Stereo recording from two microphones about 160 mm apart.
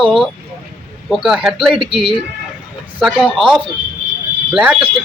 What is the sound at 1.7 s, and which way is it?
Speech, 35° right (ahead or behind).